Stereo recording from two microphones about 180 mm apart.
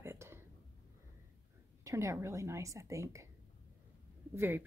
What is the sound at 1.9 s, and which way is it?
A woman's voice, 15° right (ahead or behind).